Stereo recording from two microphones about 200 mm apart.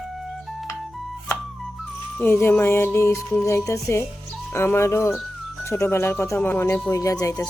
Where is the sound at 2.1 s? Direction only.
10° left (ahead or behind).